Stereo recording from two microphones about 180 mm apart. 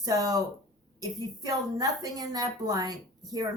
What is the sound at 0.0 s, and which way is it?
Speech, 20° right (ahead or behind).